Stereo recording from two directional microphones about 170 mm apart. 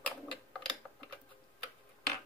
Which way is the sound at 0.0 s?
5° left (ahead or behind).